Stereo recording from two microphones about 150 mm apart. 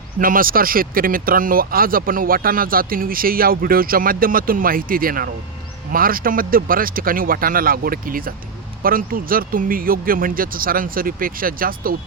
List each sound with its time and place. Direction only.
0.2 s speech: 70° right (ahead or behind)